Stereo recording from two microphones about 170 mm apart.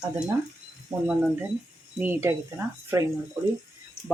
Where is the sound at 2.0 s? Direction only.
10° right (ahead or behind).